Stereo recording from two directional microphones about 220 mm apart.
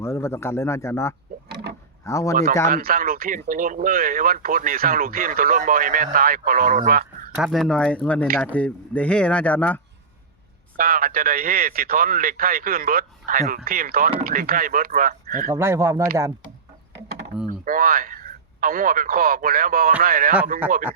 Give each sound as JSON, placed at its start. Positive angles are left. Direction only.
{"t": 0.0, "sound": "speech", "side_deg": 10}
{"t": 2.6, "sound": "speech", "side_deg": -40}
{"t": 7.3, "sound": "speech", "side_deg": 0}
{"t": 10.8, "sound": "speech", "side_deg": -40}
{"t": 15.4, "sound": "speech", "side_deg": -10}
{"t": 17.7, "sound": "speech", "side_deg": -40}